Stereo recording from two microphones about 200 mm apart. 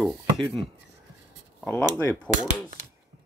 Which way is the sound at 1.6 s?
15° left (ahead or behind).